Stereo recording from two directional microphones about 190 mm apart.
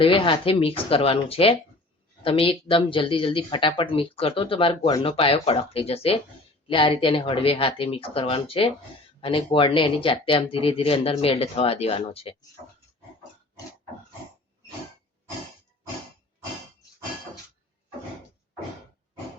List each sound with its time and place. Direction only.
0.0 s speech: 25° left (ahead or behind)